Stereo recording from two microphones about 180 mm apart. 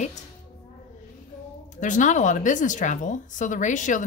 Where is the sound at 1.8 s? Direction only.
45° left (ahead or behind).